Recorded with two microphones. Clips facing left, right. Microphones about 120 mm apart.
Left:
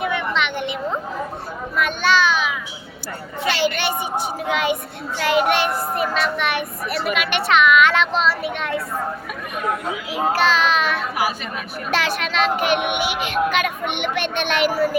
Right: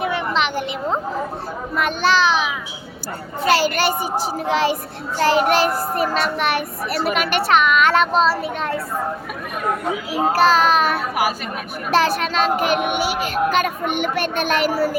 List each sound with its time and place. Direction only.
0.0 s a sound: 35° right (ahead or behind)
1.7 s a child's voice: 35° right (ahead or behind)
10.1 s a child's voice: 40° right (ahead or behind)